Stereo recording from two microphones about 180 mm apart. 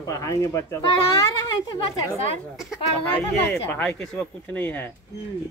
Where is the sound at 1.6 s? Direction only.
25° left (ahead or behind).